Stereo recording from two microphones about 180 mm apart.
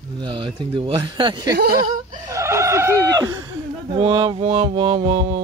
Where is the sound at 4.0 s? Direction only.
25° right (ahead or behind).